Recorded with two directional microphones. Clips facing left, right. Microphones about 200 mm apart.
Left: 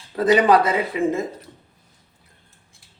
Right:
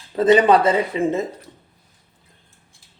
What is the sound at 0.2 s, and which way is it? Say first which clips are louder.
Speech: right 2 dB; 25° right (ahead or behind).